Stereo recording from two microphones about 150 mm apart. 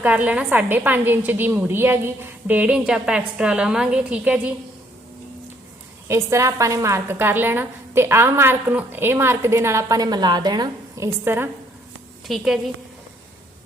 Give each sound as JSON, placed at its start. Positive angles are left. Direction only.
{"t": 0.0, "sound": "a woman's voice", "side_deg": -10}
{"t": 6.1, "sound": "a woman's voice", "side_deg": -20}
{"t": 12.3, "sound": "a woman's voice", "side_deg": 0}